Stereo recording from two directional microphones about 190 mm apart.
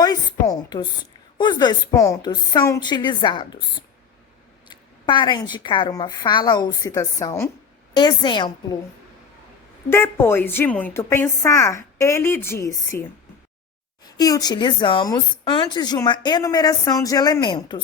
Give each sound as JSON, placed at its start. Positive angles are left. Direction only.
{"t": 0.0, "sound": "speech", "side_deg": 20}
{"t": 4.7, "sound": "speech", "side_deg": 25}
{"t": 9.9, "sound": "a woman's voice", "side_deg": 10}
{"t": 14.2, "sound": "speech", "side_deg": 20}